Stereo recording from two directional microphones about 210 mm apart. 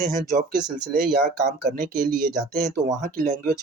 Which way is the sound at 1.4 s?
40° right (ahead or behind).